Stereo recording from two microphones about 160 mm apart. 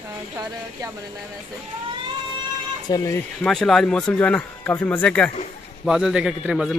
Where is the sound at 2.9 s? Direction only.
20° left (ahead or behind).